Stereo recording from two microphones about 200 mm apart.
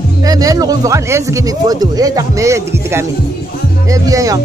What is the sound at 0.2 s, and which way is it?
Speech, 20° right (ahead or behind).